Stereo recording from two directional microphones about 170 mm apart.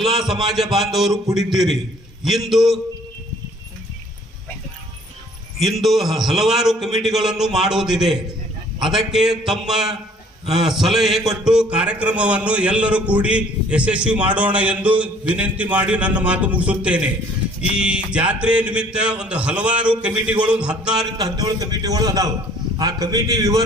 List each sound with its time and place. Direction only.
0.0 s a man's voice: centre (ahead or behind)
5.5 s a man's voice: centre (ahead or behind)
21.2 s a man's voice: 25° right (ahead or behind)